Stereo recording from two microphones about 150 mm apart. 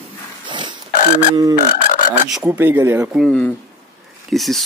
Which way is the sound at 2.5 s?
15° right (ahead or behind).